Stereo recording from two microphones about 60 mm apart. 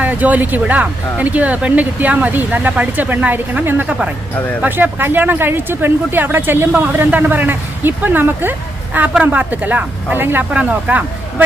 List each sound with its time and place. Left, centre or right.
0.0 s speech: right
10.5 s speech: right